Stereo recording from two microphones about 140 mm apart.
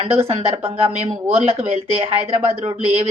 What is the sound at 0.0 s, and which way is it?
A woman's voice, 45° right (ahead or behind).